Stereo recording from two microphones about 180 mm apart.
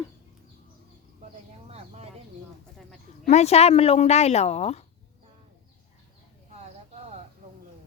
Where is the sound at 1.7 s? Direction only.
35° right (ahead or behind).